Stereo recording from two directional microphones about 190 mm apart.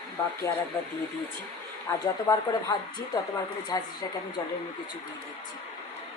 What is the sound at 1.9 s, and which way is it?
Speech, 15° left (ahead or behind).